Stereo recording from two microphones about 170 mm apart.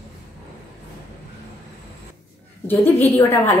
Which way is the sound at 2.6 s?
10° left (ahead or behind).